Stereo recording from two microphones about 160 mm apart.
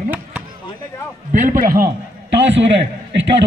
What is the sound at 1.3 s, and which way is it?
Speech, 55° right (ahead or behind).